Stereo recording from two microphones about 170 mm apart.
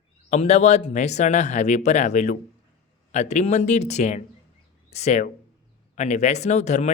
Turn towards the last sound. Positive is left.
turn(degrees=45)  # may be behind; listen again after turning